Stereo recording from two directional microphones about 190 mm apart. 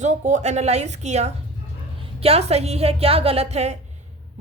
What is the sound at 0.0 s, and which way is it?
A woman's voice, 40° right (ahead or behind).